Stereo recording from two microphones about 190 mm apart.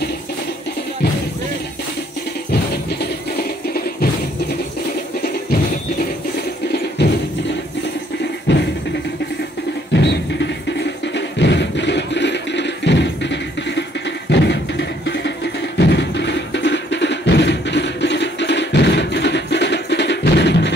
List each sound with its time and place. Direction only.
3.6 s music: 55° left (ahead or behind)
5.2 s music: 50° left (ahead or behind)
7.0 s music: 65° left (ahead or behind)
8.5 s music: 70° left (ahead or behind)
9.9 s music: 65° left (ahead or behind)